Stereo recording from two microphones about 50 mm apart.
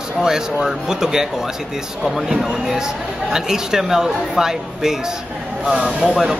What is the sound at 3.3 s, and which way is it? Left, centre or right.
Speech, centre.